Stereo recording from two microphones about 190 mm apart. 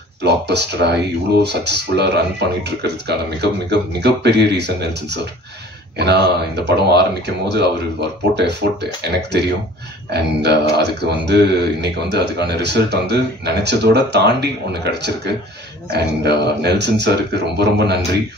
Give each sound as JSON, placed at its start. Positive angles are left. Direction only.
{"t": 0.2, "sound": "speech", "side_deg": -60}